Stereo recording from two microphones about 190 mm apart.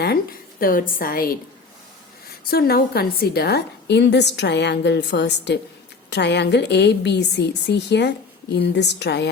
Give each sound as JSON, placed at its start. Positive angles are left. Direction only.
{"t": 0.6, "sound": "a woman's voice", "side_deg": 45}
{"t": 2.4, "sound": "a woman's voice", "side_deg": 55}